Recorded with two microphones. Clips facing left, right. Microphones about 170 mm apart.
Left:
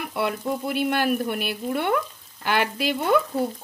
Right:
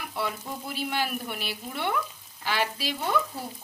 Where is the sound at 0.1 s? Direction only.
65° left (ahead or behind).